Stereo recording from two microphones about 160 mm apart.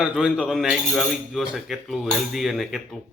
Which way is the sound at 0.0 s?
5° right (ahead or behind).